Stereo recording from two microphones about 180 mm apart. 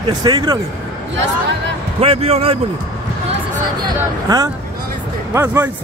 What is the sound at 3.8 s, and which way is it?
A man's voice, 20° right (ahead or behind).